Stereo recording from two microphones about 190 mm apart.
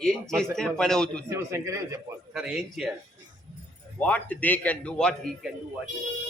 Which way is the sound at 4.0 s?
10° left (ahead or behind).